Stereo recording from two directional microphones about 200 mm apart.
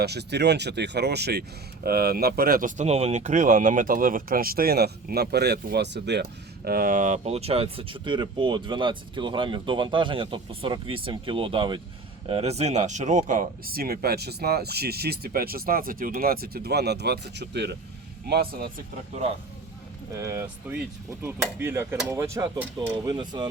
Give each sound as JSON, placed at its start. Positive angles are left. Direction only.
{"t": 0.0, "sound": "speech", "side_deg": -55}
{"t": 6.7, "sound": "speech", "side_deg": -45}
{"t": 20.1, "sound": "speech", "side_deg": -15}